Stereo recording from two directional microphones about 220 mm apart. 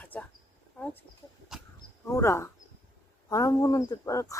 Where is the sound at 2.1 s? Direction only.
15° left (ahead or behind).